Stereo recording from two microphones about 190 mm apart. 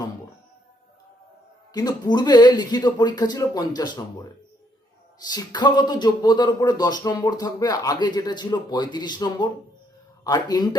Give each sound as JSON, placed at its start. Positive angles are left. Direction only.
{"t": 1.7, "sound": "speech", "side_deg": 20}
{"t": 5.2, "sound": "speech", "side_deg": 20}